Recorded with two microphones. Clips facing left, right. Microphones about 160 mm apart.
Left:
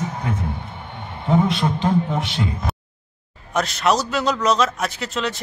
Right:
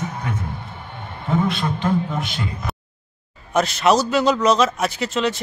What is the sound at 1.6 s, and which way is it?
Speech, 25° left (ahead or behind).